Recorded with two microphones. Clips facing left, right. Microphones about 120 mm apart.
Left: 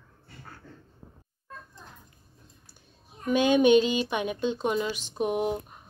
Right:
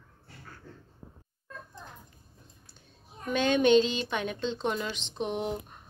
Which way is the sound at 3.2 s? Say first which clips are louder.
Left 4 dB; 10° left (ahead or behind).